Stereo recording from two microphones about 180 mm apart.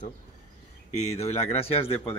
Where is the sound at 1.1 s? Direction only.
35° left (ahead or behind).